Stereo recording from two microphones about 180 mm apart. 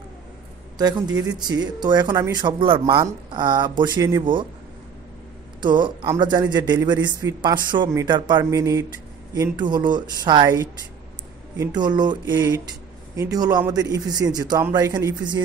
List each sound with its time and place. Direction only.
0.7 s a man's voice: 20° right (ahead or behind)
5.6 s a man's voice: 25° right (ahead or behind)